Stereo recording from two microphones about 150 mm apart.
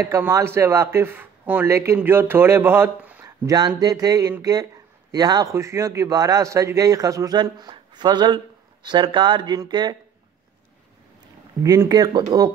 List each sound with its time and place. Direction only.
0.0 s a man's voice: 20° right (ahead or behind)
11.6 s a man's voice: 20° right (ahead or behind)